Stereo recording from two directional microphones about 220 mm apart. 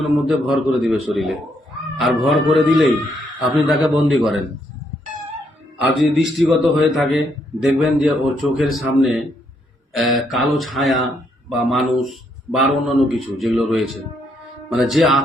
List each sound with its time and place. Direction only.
0.0 s speech: centre (ahead or behind)
5.8 s a man's voice: 55° left (ahead or behind)
6.5 s speech: centre (ahead or behind)